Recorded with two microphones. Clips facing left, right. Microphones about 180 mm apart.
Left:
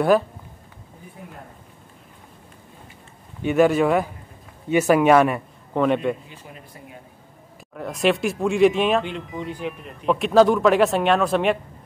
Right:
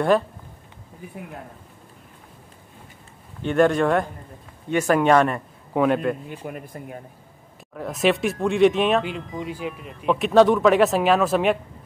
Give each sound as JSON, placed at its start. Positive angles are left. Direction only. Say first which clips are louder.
{"t": 3.4, "sound": "speech", "louder": "left 1 dB", "side_deg": 5}
{"t": 6.2, "sound": "speech", "louder": "right 9 dB", "side_deg": -60}
{"t": 7.7, "sound": "speech", "louder": "even", "side_deg": 0}